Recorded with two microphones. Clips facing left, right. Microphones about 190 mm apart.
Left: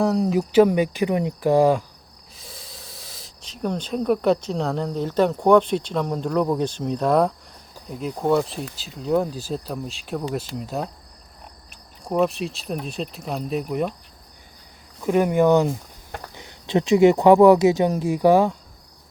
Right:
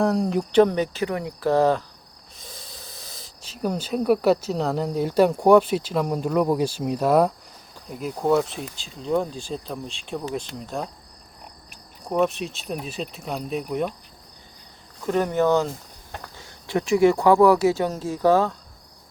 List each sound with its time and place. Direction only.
0.0 s speech: centre (ahead or behind)
2.4 s speech: centre (ahead or behind)
12.0 s speech: centre (ahead or behind)
15.0 s speech: 10° left (ahead or behind)